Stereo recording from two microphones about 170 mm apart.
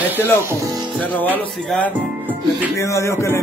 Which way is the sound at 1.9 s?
10° right (ahead or behind).